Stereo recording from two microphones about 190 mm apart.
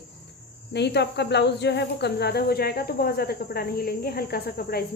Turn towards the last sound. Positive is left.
turn(degrees=55)  # may be behind; listen again after turning